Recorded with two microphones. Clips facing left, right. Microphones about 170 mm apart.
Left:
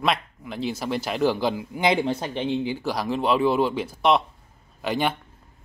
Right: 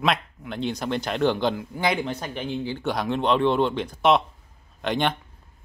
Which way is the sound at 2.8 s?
Centre (ahead or behind).